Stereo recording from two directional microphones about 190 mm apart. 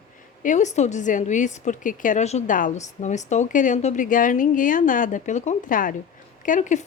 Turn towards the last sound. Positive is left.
turn(degrees=40)  # may be behind; listen again after turning